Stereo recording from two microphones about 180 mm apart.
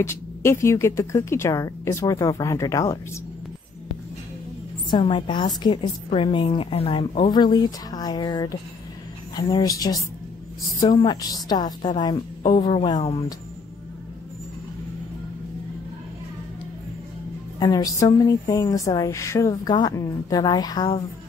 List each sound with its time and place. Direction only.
0.0 s speech: 15° left (ahead or behind)
4.9 s a woman's voice: 25° left (ahead or behind)
17.6 s a woman's voice: 20° left (ahead or behind)